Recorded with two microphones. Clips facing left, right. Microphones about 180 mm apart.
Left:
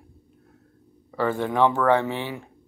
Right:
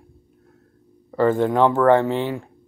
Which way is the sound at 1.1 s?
15° right (ahead or behind).